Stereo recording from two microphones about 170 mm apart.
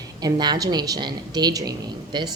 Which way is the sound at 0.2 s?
25° right (ahead or behind).